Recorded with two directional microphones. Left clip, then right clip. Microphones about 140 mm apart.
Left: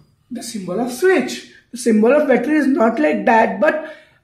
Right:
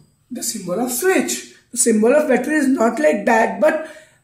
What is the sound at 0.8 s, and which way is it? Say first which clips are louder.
A man's voice: left 3 dB; 65° left (ahead or behind).